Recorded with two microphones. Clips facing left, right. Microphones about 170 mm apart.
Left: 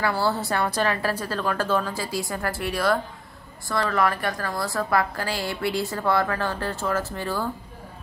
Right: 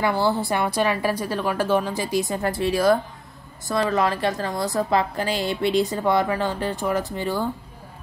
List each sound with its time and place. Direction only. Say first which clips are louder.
0.0 s a woman's voice: right 3 dB; 15° right (ahead or behind)